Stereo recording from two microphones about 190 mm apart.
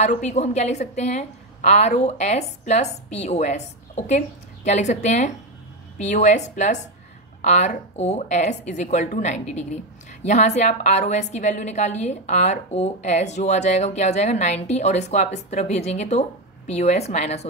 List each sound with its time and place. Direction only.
0.0 s a woman's voice: 40° left (ahead or behind)